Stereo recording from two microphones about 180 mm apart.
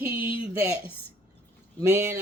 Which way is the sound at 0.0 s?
10° right (ahead or behind).